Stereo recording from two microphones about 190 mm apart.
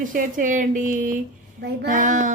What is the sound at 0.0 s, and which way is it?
Speech, 45° right (ahead or behind).